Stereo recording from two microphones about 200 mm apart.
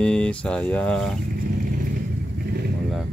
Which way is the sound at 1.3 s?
45° right (ahead or behind).